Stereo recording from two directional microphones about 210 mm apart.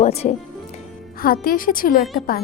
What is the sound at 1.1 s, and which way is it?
Speech, 45° left (ahead or behind).